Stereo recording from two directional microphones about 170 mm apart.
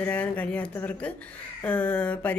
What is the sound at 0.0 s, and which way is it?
A woman's voice, 10° left (ahead or behind).